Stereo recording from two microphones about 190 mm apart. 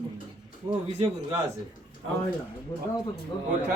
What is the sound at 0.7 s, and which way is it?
Speech, 25° right (ahead or behind).